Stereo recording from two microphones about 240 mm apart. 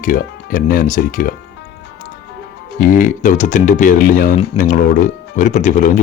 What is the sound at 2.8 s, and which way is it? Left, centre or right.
A man's voice, left.